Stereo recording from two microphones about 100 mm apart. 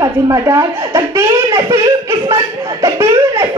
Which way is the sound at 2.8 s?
35° right (ahead or behind).